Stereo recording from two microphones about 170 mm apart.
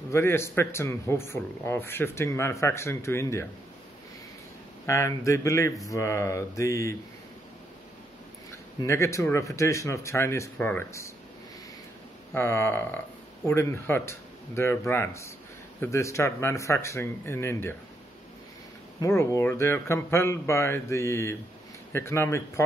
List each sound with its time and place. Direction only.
0.1 s speech: 15° left (ahead or behind)
4.8 s speech: 15° left (ahead or behind)
8.8 s speech: 15° left (ahead or behind)
12.4 s speech: 15° left (ahead or behind)
18.9 s speech: 15° left (ahead or behind)